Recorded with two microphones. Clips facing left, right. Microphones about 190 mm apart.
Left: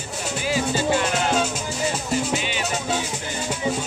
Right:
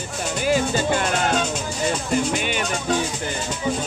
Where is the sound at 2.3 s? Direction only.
55° right (ahead or behind).